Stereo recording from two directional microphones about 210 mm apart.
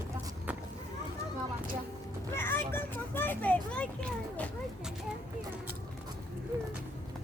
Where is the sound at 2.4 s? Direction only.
10° left (ahead or behind).